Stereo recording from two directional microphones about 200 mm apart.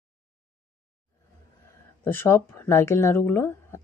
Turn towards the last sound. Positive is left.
turn(degrees=10)  # may be behind; listen again after turning